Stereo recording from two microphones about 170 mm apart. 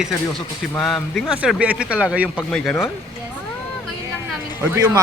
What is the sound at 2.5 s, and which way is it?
Speech, 5° left (ahead or behind).